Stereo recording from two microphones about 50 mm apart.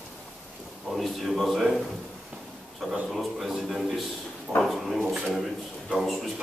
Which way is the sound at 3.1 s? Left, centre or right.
Centre.